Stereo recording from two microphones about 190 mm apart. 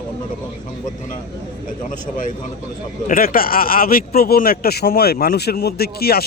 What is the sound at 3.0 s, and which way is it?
Speech, 50° left (ahead or behind).